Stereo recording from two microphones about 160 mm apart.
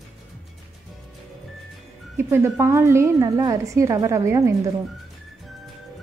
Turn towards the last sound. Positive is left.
turn(degrees=-20)  # may be behind; listen again after turning